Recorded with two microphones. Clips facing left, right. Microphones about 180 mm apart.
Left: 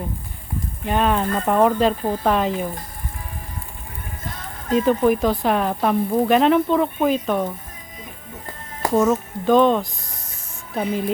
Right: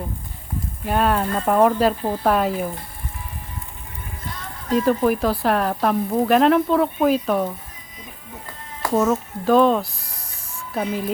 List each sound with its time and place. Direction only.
0.9 s speech: 5° right (ahead or behind)
4.3 s music: 50° left (ahead or behind)
4.8 s speech: centre (ahead or behind)
8.9 s speech: centre (ahead or behind)